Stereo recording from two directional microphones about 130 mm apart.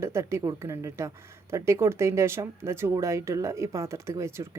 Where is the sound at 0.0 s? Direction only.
20° right (ahead or behind).